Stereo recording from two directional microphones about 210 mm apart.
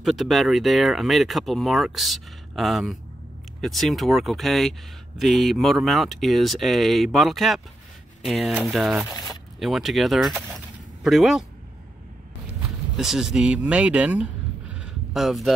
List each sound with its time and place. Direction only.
0.0 s speech: centre (ahead or behind)
12.9 s speech: centre (ahead or behind)